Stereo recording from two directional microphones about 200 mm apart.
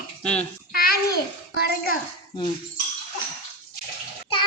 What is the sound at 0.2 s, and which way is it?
Speech, 5° left (ahead or behind).